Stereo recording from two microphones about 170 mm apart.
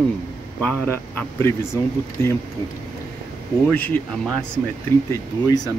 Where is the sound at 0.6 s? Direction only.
5° left (ahead or behind).